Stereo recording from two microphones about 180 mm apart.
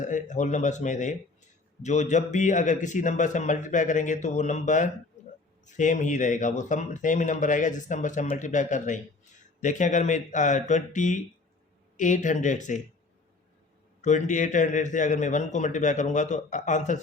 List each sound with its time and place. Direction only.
0.0 s speech: 45° left (ahead or behind)
14.0 s speech: 40° left (ahead or behind)